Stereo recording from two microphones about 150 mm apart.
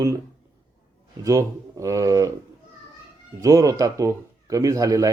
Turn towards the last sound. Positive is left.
turn(degrees=-25)  # may be behind; listen again after turning